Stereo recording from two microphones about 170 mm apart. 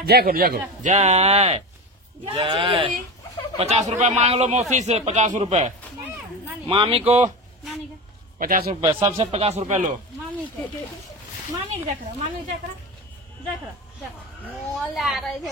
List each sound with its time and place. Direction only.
0.0 s a man's voice: 65° right (ahead or behind)
0.9 s a man's voice: 40° right (ahead or behind)
6.7 s a man's voice: 35° right (ahead or behind)
8.4 s a man's voice: 60° right (ahead or behind)
8.8 s a man's voice: 35° right (ahead or behind)
11.7 s speech: 45° right (ahead or behind)
14.4 s speech: centre (ahead or behind)